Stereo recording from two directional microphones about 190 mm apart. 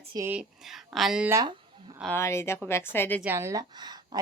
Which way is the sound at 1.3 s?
20° right (ahead or behind).